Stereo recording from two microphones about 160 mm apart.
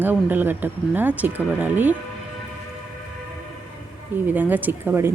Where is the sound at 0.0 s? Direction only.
10° right (ahead or behind).